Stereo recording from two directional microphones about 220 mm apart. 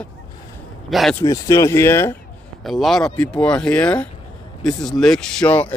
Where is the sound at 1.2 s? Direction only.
15° left (ahead or behind).